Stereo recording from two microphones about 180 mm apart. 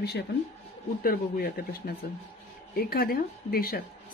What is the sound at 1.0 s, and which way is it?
A woman's voice, 55° left (ahead or behind).